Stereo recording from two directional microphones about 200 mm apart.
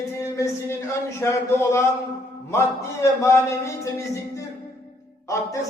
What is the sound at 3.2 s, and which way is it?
Speech, 15° left (ahead or behind).